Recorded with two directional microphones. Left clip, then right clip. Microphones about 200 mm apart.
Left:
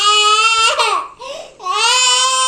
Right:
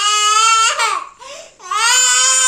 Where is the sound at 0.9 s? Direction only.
20° right (ahead or behind).